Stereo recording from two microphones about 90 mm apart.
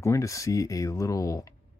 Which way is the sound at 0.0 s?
35° left (ahead or behind).